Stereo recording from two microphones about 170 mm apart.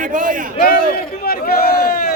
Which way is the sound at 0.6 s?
60° left (ahead or behind).